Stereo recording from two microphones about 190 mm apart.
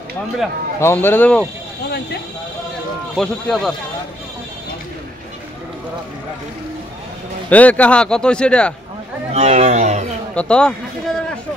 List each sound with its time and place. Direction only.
0.7 s speech: 10° left (ahead or behind)
3.2 s a man's voice: centre (ahead or behind)
7.4 s a man's voice: 10° left (ahead or behind)
9.3 s a sound: 35° right (ahead or behind)
10.3 s a man's voice: 5° left (ahead or behind)